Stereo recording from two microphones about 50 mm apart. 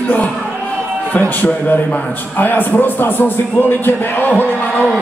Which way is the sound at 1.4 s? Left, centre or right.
Left.